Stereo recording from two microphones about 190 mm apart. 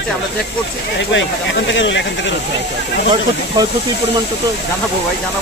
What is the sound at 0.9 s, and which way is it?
Speech, 70° left (ahead or behind).